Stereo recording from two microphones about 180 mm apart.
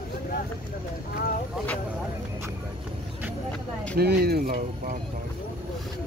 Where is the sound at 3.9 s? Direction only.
60° right (ahead or behind).